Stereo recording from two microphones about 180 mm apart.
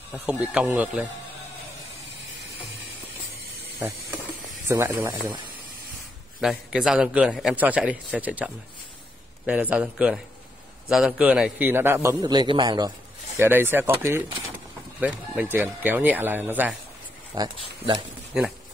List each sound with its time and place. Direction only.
0.1 s a man's voice: 5° right (ahead or behind)
4.6 s a man's voice: 15° right (ahead or behind)
6.4 s a man's voice: centre (ahead or behind)
9.5 s a man's voice: 10° right (ahead or behind)
13.4 s a man's voice: 10° right (ahead or behind)
18.3 s a man's voice: 5° right (ahead or behind)